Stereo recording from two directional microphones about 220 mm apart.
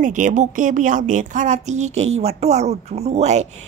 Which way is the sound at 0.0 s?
35° right (ahead or behind).